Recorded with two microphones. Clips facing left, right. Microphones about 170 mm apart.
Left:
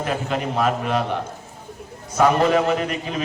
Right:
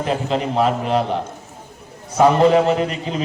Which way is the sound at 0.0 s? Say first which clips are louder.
Right 3 dB; 25° right (ahead or behind).